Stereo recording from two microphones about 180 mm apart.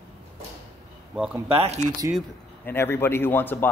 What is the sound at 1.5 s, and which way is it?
Speech, 35° right (ahead or behind).